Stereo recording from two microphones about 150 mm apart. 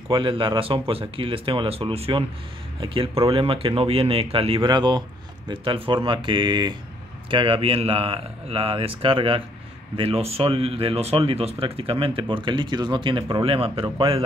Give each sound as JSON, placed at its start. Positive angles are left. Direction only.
{"t": 0.1, "sound": "speech", "side_deg": -35}